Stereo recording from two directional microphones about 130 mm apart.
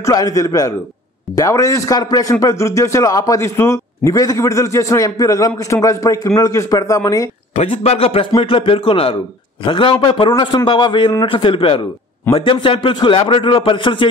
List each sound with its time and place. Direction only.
0.0 s a man's voice: 25° left (ahead or behind)
7.5 s speech: 50° left (ahead or behind)